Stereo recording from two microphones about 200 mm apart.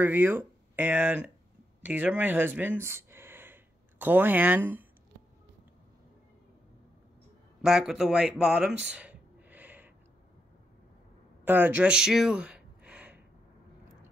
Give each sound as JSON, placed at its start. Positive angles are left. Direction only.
{"t": 0.0, "sound": "speech", "side_deg": -10}
{"t": 7.6, "sound": "speech", "side_deg": 0}
{"t": 11.4, "sound": "a sound", "side_deg": -10}